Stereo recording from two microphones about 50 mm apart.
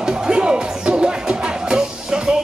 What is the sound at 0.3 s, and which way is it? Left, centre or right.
Music, centre.